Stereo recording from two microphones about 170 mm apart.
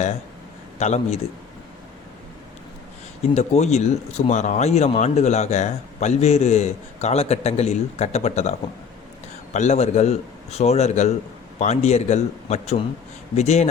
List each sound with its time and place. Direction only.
0.8 s a man's voice: 40° left (ahead or behind)
3.3 s a man's voice: 40° left (ahead or behind)